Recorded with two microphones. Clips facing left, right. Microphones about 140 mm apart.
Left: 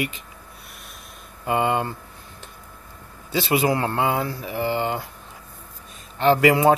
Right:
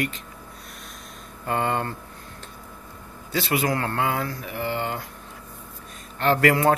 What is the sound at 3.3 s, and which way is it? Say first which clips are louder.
Speech: left 3 dB; 25° left (ahead or behind).